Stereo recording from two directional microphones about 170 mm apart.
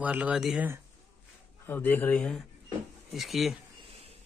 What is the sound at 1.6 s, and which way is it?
Speech, 10° left (ahead or behind).